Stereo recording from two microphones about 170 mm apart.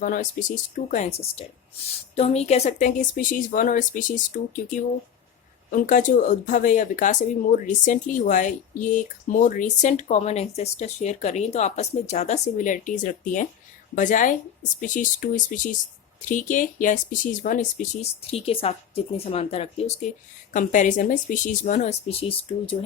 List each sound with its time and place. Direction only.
0.0 s speech: 50° left (ahead or behind); by 22.8 s 30° left (ahead or behind)